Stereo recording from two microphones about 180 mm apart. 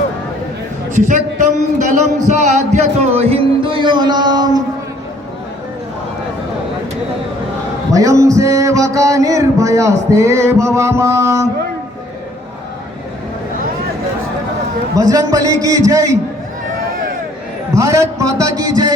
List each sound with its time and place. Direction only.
0.9 s a man's voice: 45° right (ahead or behind); by 4.6 s 20° right (ahead or behind)
7.9 s music: 20° right (ahead or behind)
14.9 s a man's voice: 20° right (ahead or behind)
17.7 s music: 15° right (ahead or behind)